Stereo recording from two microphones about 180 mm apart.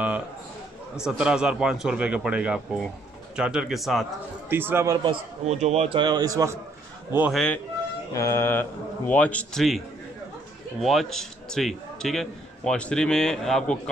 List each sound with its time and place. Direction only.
0.9 s a man's voice: 5° right (ahead or behind)
4.5 s speech: 10° right (ahead or behind)
5.4 s a man's voice: 35° right (ahead or behind); by 7.3 s 10° right (ahead or behind)
7.3 s speech: 5° left (ahead or behind)
8.1 s speech: 15° left (ahead or behind)
10.8 s a man's voice: centre (ahead or behind)